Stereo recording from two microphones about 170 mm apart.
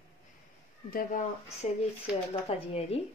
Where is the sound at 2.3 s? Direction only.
35° left (ahead or behind).